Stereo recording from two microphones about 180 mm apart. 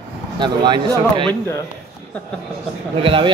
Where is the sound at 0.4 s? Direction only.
25° right (ahead or behind).